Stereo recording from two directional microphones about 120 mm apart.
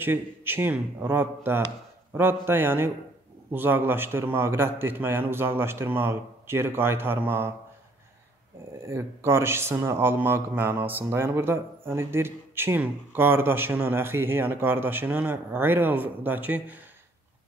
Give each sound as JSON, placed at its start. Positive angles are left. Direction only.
{"t": 0.0, "sound": "speech", "side_deg": -20}
{"t": 8.8, "sound": "speech", "side_deg": -20}